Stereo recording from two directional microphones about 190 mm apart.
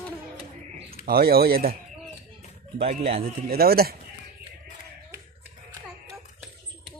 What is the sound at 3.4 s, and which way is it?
Speech, 55° right (ahead or behind).